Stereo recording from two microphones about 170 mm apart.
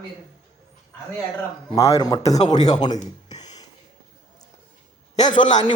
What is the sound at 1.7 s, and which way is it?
A man's voice, 20° left (ahead or behind).